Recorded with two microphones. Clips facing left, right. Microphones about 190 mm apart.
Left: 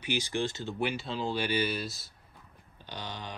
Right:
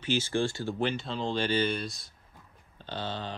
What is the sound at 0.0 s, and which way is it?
Speech, 15° left (ahead or behind).